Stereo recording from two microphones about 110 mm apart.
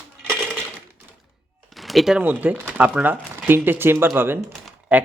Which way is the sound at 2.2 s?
15° right (ahead or behind).